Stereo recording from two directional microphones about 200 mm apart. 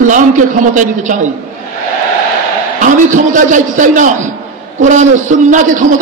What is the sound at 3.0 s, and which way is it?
A man's voice, 40° right (ahead or behind).